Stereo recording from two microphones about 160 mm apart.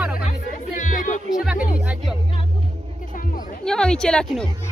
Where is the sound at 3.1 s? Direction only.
60° left (ahead or behind).